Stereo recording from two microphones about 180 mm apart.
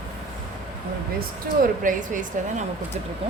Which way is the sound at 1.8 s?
45° right (ahead or behind).